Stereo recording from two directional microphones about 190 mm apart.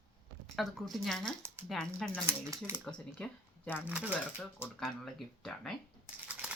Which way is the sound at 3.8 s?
5° right (ahead or behind).